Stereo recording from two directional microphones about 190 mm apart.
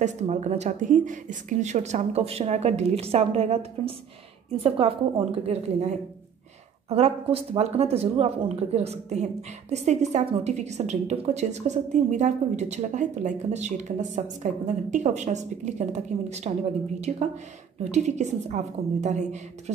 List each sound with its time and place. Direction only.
0.0 s speech: 40° right (ahead or behind)